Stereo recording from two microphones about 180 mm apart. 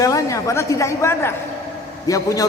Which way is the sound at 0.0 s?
20° left (ahead or behind).